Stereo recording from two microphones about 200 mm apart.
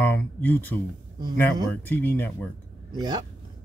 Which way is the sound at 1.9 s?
10° left (ahead or behind).